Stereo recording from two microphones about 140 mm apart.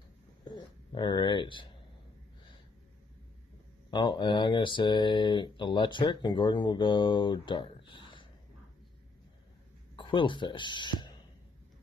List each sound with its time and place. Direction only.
0.5 s a sound: 35° left (ahead or behind)
3.9 s speech: 35° left (ahead or behind)
9.9 s speech: 35° left (ahead or behind)